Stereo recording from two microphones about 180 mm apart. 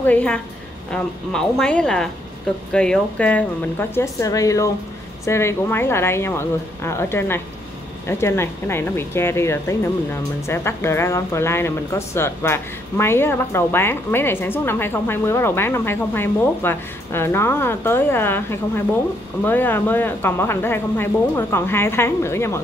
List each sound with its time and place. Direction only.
0.0 s speech: 10° left (ahead or behind)